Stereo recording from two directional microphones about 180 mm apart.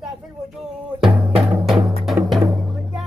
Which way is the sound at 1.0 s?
5° right (ahead or behind).